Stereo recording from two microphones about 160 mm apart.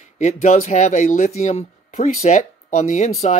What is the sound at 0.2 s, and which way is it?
Speech, 50° left (ahead or behind).